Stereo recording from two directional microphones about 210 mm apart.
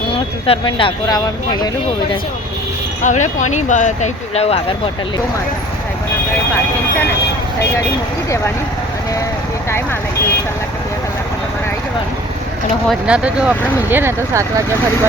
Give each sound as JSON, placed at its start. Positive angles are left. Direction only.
{"t": 0.1, "sound": "speech", "side_deg": 25}
{"t": 3.0, "sound": "speech", "side_deg": 35}
{"t": 12.9, "sound": "speech", "side_deg": -5}